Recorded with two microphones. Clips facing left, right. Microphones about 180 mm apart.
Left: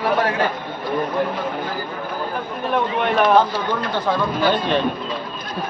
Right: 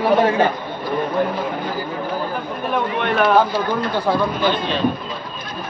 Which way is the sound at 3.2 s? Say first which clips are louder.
Right 2 dB; 10° right (ahead or behind).